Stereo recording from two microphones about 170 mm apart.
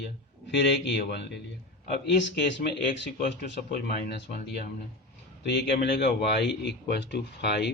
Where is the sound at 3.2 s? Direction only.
65° left (ahead or behind).